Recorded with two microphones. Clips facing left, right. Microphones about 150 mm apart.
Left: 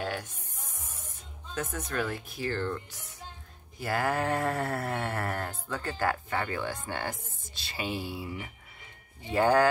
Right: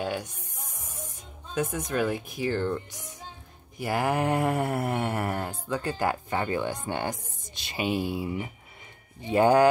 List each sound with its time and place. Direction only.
0.0 s music: 15° right (ahead or behind)
1.5 s mantra: 15° right (ahead or behind)